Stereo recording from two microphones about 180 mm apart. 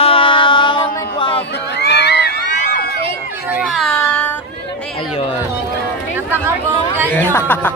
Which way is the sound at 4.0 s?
10° left (ahead or behind).